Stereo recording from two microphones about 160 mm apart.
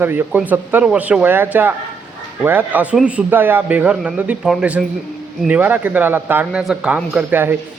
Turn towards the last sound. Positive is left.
turn(degrees=-10)  # may be behind; listen again after turning